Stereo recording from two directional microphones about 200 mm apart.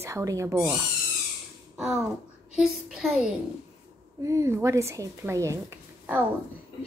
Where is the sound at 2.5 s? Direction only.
5° right (ahead or behind).